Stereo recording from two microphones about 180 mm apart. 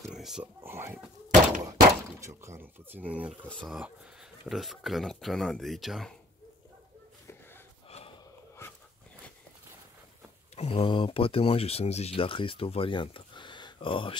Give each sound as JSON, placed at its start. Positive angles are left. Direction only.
{"t": 0.1, "sound": "speech", "side_deg": -5}
{"t": 0.7, "sound": "speech", "side_deg": -15}
{"t": 8.6, "sound": "dog", "side_deg": 15}
{"t": 10.5, "sound": "speech", "side_deg": 35}